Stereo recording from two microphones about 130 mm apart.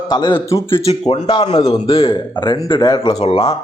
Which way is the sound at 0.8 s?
55° left (ahead or behind).